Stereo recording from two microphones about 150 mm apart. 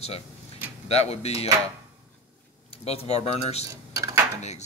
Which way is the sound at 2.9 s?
45° left (ahead or behind).